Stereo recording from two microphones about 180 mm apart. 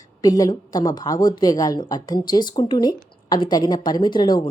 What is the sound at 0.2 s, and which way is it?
A woman's voice, 20° left (ahead or behind).